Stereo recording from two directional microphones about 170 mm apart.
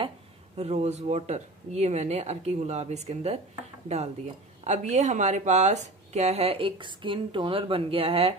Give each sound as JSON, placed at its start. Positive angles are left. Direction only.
{"t": 0.6, "sound": "speech", "side_deg": -40}